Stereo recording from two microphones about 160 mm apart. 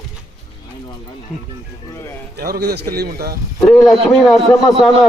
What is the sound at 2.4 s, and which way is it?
Speech, 75° right (ahead or behind).